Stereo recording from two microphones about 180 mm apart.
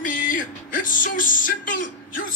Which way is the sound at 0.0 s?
50° left (ahead or behind).